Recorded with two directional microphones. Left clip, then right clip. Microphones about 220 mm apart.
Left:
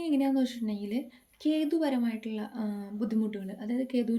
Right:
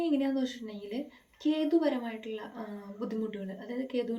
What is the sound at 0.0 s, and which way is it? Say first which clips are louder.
Speech: left 2 dB; 45° left (ahead or behind).